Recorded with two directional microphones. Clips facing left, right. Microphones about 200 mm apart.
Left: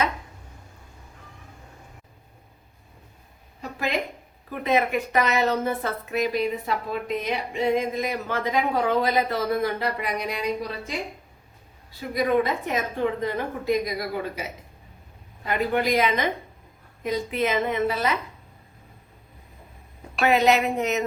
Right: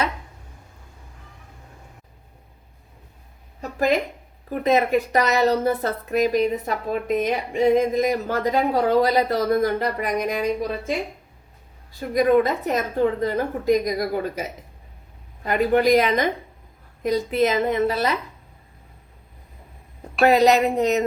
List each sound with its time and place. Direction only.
3.6 s a sound: 45° right (ahead or behind)
4.6 s speech: 40° right (ahead or behind)
11.9 s speech: 45° right (ahead or behind)
15.4 s speech: 45° right (ahead or behind)
20.1 s speech: 35° right (ahead or behind)